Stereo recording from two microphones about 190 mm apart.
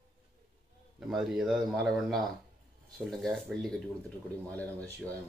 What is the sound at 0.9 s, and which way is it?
A man's voice, centre (ahead or behind).